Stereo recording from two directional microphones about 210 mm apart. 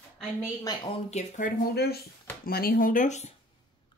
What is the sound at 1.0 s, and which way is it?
A woman's voice, 35° left (ahead or behind).